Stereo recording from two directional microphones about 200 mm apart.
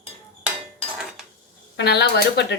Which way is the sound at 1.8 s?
55° left (ahead or behind).